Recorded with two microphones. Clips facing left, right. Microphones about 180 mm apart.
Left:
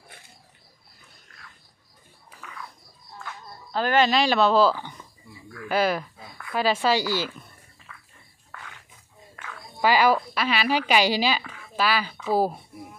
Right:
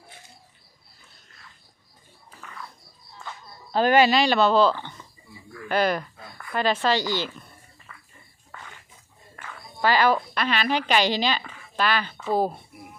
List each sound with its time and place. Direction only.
3.7 s speech: 20° right (ahead or behind)
4.0 s speech: centre (ahead or behind)
7.9 s a sound: centre (ahead or behind)
9.8 s a woman's voice: 10° left (ahead or behind)